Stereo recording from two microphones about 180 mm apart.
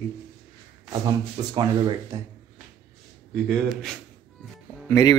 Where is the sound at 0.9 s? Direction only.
25° right (ahead or behind).